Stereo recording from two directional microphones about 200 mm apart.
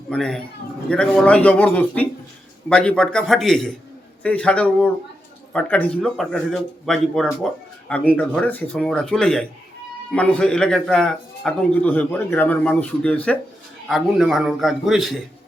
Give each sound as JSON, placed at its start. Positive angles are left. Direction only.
{"t": 0.1, "sound": "a man's voice", "side_deg": 0}